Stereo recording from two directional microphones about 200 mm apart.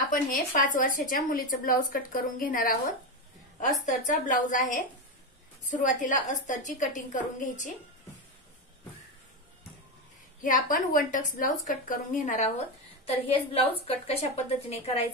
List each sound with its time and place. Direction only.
0.1 s a woman's voice: 40° left (ahead or behind)
3.8 s speech: 40° left (ahead or behind)
10.4 s speech: 40° left (ahead or behind)